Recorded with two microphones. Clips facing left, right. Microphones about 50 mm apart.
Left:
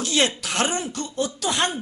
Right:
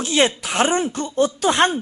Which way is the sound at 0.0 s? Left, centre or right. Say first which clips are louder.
Right 4 dB; right.